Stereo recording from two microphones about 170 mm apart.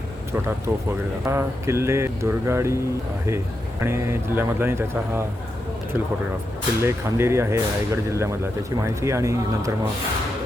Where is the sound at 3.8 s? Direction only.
15° right (ahead or behind).